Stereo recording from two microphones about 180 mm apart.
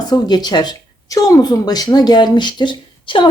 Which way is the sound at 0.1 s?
25° left (ahead or behind).